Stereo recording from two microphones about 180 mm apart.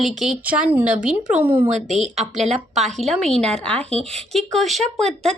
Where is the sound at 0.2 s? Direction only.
5° right (ahead or behind).